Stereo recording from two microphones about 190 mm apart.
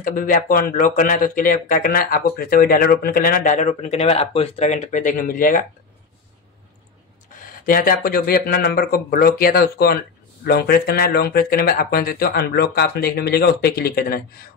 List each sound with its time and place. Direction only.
0.0 s speech: 45° left (ahead or behind)
7.3 s speech: 50° left (ahead or behind)